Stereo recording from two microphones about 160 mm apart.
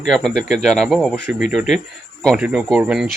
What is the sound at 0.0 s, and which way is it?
Speech, centre (ahead or behind).